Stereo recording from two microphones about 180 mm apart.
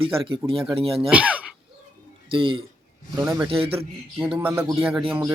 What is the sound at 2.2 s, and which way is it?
Speech, 30° right (ahead or behind).